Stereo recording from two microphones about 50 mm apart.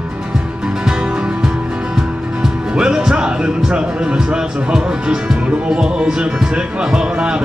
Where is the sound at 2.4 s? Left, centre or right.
Centre.